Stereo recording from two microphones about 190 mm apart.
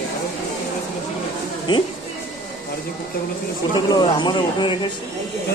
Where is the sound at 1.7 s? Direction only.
25° left (ahead or behind).